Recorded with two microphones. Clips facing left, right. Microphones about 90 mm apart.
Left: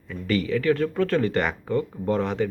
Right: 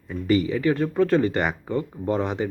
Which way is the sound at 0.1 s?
20° right (ahead or behind).